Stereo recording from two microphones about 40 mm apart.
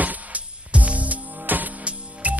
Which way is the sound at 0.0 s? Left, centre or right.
Right.